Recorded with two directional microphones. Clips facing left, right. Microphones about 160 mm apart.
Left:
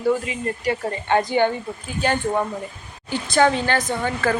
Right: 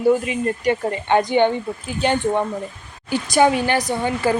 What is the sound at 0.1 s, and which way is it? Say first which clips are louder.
Speech: right 3 dB; 25° right (ahead or behind).